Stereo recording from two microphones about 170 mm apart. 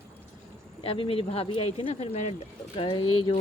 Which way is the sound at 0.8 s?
35° left (ahead or behind).